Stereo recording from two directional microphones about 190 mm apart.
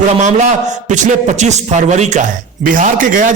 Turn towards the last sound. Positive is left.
turn(degrees=-45)  # may be behind; listen again after turning